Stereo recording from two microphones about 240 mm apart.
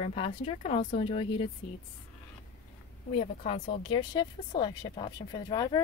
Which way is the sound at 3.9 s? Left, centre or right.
Centre.